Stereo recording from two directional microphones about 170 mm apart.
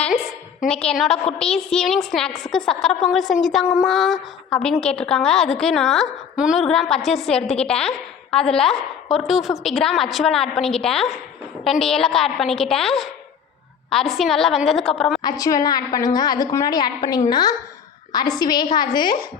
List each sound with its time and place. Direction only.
0.0 s a sound: centre (ahead or behind)
0.9 s a woman's voice: centre (ahead or behind)
15.2 s a woman's voice: 20° left (ahead or behind)